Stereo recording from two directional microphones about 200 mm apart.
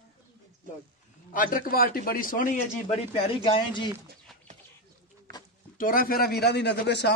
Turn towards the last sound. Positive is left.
turn(degrees=60)  # may be behind; listen again after turning